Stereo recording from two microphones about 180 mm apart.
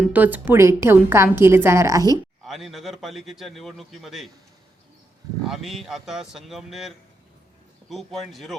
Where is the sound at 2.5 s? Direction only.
Centre (ahead or behind).